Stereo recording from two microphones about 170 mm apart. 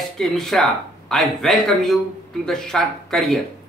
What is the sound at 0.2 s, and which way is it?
Speech, centre (ahead or behind).